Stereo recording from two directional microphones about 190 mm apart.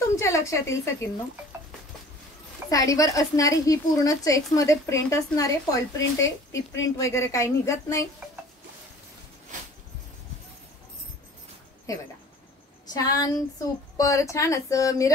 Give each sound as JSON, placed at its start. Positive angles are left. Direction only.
{"t": 0.1, "sound": "a woman's voice", "side_deg": 15}
{"t": 2.7, "sound": "a woman's voice", "side_deg": 20}
{"t": 11.9, "sound": "a woman's voice", "side_deg": 15}